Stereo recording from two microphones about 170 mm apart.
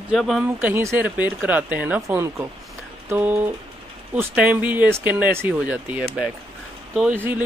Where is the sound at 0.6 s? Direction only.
15° right (ahead or behind).